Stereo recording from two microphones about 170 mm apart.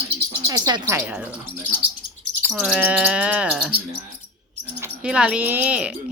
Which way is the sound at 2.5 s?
5° right (ahead or behind).